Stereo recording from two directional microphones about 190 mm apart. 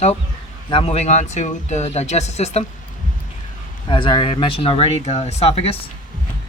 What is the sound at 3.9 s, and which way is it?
Speech, 25° left (ahead or behind).